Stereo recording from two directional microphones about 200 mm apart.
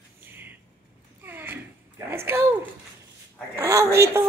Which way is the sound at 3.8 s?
55° right (ahead or behind).